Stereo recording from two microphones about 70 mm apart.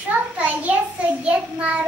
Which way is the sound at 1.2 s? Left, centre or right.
Centre.